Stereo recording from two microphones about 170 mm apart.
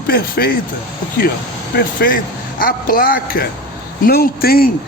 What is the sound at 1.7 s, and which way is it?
Speech, 60° left (ahead or behind).